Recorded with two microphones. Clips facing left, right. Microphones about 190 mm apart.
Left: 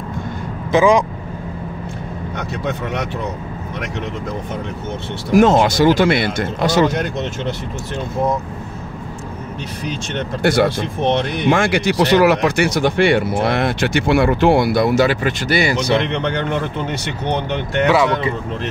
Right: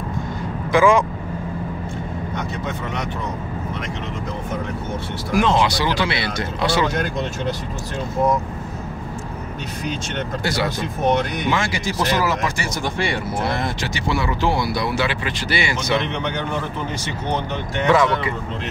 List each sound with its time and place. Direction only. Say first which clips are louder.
0.7 s speech: left 2 dB; 20° left (ahead or behind)
2.3 s speech: left 5 dB; 65° left (ahead or behind)
5.3 s speech: left 6 dB; 45° left (ahead or behind)
10.4 s speech: left 10 dB; 55° left (ahead or behind); by 16.0 s 35° left (ahead or behind)
17.0 s speech: left 3 dB; 65° left (ahead or behind)
17.8 s speech: left 1 dB; 10° left (ahead or behind)